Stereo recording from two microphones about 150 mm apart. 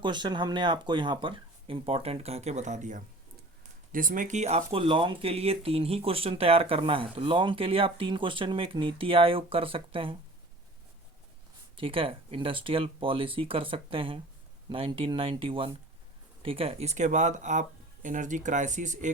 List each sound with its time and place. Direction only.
0.0 s speech: 30° right (ahead or behind); by 3.0 s 55° right (ahead or behind)
3.9 s speech: 65° right (ahead or behind); by 10.2 s 35° right (ahead or behind)
11.8 s speech: 35° right (ahead or behind); by 19.1 s 55° right (ahead or behind)